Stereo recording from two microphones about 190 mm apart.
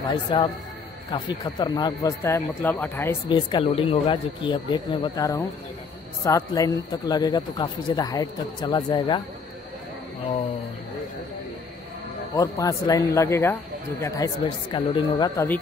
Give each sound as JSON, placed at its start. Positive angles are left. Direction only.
{"t": 0.1, "sound": "speech", "side_deg": 20}
{"t": 3.3, "sound": "speech", "side_deg": 25}
{"t": 12.4, "sound": "speech", "side_deg": 15}